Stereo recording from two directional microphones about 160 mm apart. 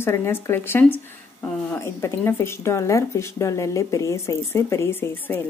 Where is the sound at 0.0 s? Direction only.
15° left (ahead or behind).